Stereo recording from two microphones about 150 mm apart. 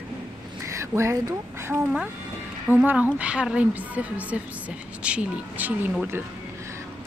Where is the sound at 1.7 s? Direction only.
5° right (ahead or behind).